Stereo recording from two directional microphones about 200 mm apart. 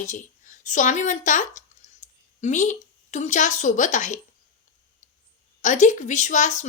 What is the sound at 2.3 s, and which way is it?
A woman's voice, 35° left (ahead or behind).